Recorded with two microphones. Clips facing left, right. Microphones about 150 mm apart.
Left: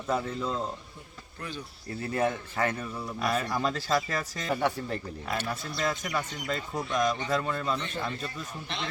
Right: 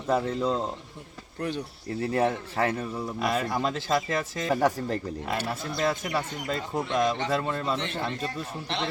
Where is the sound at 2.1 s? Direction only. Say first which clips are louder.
Right 2 dB; 35° right (ahead or behind).